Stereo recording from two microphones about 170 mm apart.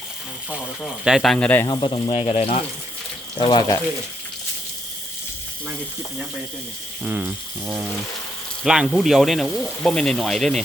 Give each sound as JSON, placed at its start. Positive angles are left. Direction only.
{"t": 1.0, "sound": "speech", "side_deg": 0}
{"t": 1.6, "sound": "speech", "side_deg": 25}
{"t": 7.0, "sound": "speech", "side_deg": -10}